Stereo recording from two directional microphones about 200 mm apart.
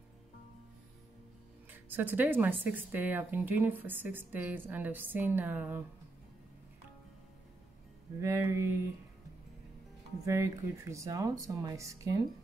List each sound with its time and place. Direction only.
1.7 s speech: 10° right (ahead or behind)
8.2 s speech: 15° right (ahead or behind)
10.2 s speech: 15° right (ahead or behind)